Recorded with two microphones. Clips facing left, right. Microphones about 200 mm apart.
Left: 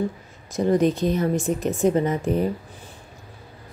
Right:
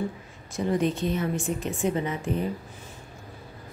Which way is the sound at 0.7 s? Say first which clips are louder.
Left 6 dB; 40° left (ahead or behind).